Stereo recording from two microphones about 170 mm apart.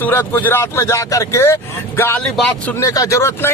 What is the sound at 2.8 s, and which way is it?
Speech, 20° left (ahead or behind).